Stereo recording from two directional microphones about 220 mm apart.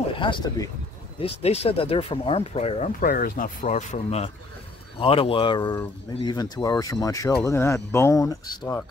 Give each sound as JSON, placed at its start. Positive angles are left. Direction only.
{"t": 0.2, "sound": "speech", "side_deg": 20}
{"t": 3.0, "sound": "speech", "side_deg": 40}